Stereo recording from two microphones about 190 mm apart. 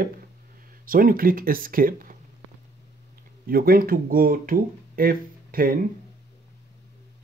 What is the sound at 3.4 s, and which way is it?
Speech, 50° right (ahead or behind).